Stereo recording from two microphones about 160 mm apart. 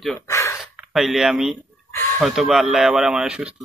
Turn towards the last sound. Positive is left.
turn(degrees=-5)  # may be behind; listen again after turning